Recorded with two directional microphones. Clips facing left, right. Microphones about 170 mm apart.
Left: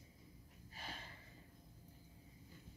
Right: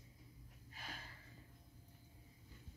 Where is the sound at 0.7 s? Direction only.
30° left (ahead or behind).